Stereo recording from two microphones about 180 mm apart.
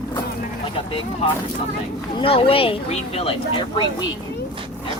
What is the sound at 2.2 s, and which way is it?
A woman's voice, 30° left (ahead or behind).